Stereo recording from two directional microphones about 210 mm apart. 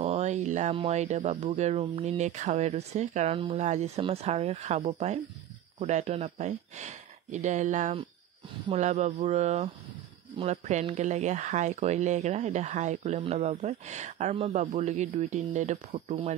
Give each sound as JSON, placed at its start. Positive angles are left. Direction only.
{"t": 0.0, "sound": "speech", "side_deg": -30}